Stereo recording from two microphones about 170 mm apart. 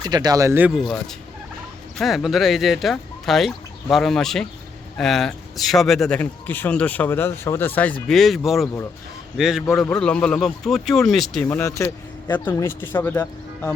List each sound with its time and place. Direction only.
0.0 s speech: 25° right (ahead or behind)
0.7 s speech: centre (ahead or behind)
11.4 s speech: 15° left (ahead or behind)